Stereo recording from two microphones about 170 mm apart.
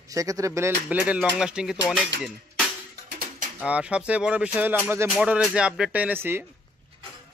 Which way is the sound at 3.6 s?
5° right (ahead or behind).